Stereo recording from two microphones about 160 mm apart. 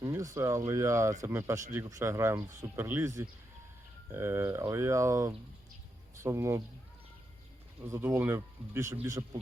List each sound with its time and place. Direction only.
0.0 s speech: 20° right (ahead or behind)
7.9 s speech: 15° right (ahead or behind)